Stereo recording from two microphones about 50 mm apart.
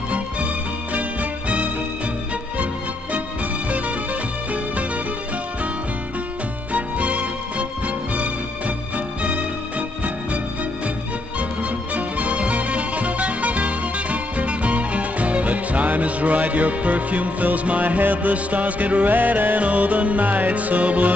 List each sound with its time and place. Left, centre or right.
6.7 s music: right
11.9 s music: right